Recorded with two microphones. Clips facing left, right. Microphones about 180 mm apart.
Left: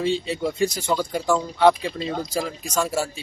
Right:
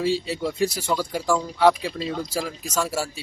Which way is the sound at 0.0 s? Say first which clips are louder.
Left 1 dB; 5° right (ahead or behind).